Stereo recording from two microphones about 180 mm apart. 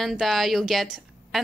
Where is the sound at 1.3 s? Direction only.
Centre (ahead or behind).